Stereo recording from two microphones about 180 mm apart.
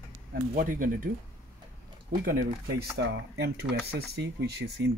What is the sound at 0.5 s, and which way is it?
Speech, 50° right (ahead or behind).